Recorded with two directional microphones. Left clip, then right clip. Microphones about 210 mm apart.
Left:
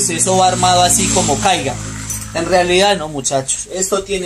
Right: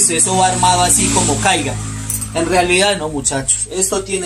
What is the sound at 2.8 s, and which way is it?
Speech, 25° left (ahead or behind).